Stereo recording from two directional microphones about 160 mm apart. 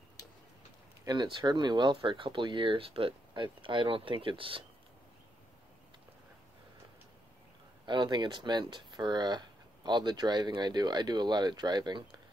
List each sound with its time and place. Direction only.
1.0 s speech: 25° right (ahead or behind)
7.8 s speech: 30° right (ahead or behind)